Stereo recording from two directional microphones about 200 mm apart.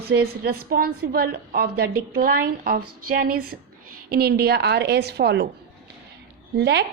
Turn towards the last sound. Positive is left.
turn(degrees=-60)  # may be behind; listen again after turning